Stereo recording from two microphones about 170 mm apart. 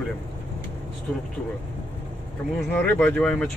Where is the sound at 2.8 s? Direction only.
10° left (ahead or behind).